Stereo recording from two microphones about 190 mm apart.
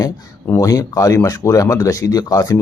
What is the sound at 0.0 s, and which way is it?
Speech, 20° left (ahead or behind).